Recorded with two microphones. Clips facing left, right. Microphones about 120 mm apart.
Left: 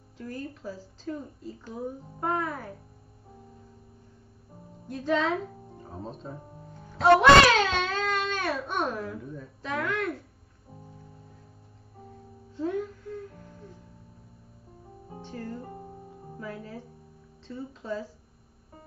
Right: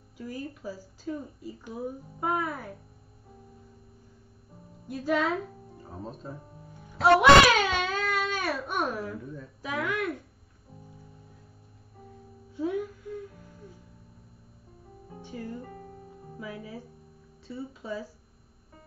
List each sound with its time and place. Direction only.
0.2 s a woman's voice: 10° right (ahead or behind)
4.8 s speech: 10° right (ahead or behind)
6.9 s a sound: 10° right (ahead or behind)
12.5 s music: 10° right (ahead or behind)
15.6 s music: 25° left (ahead or behind)
16.3 s speech: 10° right (ahead or behind)